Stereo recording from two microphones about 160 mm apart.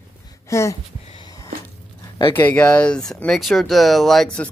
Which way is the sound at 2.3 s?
10° left (ahead or behind).